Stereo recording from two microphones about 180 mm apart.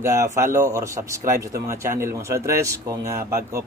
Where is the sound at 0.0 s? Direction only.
15° right (ahead or behind).